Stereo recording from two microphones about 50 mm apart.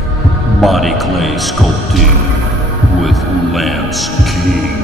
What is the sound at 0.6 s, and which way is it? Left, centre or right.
Speech, centre.